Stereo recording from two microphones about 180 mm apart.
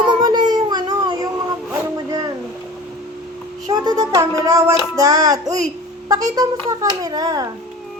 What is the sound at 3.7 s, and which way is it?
Child singing, 20° right (ahead or behind).